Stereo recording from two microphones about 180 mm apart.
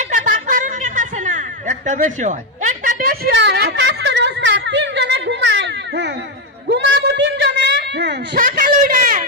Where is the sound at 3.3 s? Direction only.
70° right (ahead or behind).